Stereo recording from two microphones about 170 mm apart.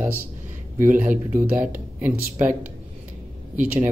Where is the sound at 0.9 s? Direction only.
50° right (ahead or behind).